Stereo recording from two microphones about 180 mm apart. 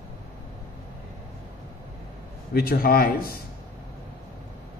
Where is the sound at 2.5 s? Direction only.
55° left (ahead or behind).